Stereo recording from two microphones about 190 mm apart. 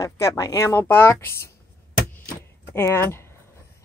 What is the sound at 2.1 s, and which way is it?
Keys jangling, 10° left (ahead or behind).